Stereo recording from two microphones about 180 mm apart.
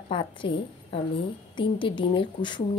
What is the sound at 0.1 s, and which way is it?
A woman's voice, 30° left (ahead or behind).